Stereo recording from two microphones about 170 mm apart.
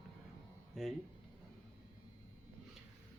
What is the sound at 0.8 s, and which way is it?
Speech, centre (ahead or behind).